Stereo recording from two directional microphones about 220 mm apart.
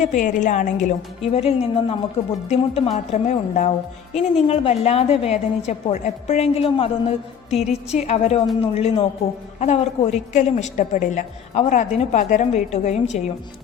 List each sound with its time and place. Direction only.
0.0 s a woman's voice: 35° left (ahead or behind)